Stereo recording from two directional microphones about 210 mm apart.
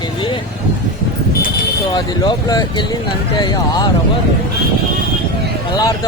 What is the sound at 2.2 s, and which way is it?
Speech, 20° left (ahead or behind).